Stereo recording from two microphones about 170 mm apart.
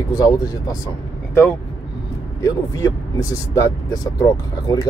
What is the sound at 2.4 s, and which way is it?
Speech, 20° left (ahead or behind).